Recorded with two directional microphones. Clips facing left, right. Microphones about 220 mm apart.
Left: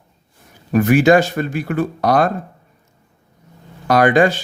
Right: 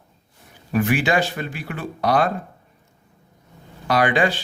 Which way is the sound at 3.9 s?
45° left (ahead or behind).